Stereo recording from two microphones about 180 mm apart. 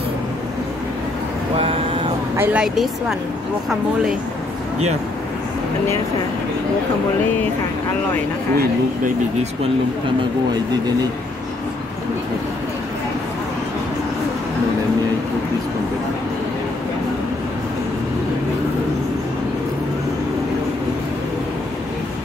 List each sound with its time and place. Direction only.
2.3 s speech: 10° right (ahead or behind)